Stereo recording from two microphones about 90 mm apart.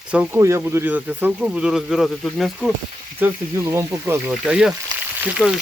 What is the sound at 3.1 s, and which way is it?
Speech, 25° right (ahead or behind).